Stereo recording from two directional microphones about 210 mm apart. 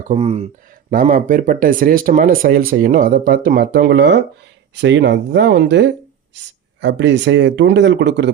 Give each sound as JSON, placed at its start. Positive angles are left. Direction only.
{"t": 0.1, "sound": "speech", "side_deg": -30}
{"t": 0.9, "sound": "speech", "side_deg": -40}